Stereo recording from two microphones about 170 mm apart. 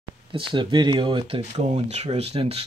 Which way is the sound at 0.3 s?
30° right (ahead or behind).